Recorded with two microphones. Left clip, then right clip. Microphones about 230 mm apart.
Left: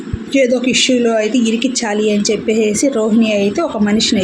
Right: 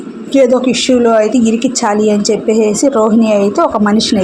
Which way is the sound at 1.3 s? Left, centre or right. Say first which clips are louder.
Right 3 dB; right.